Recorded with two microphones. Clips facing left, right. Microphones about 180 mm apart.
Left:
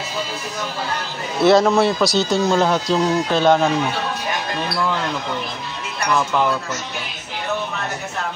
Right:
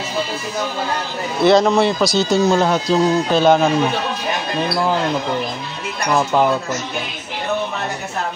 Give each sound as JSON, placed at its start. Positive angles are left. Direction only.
{"t": 1.4, "sound": "speech", "side_deg": 5}
{"t": 6.0, "sound": "speech", "side_deg": -35}